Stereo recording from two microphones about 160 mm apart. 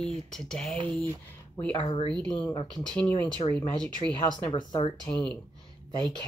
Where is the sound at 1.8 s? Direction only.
35° left (ahead or behind).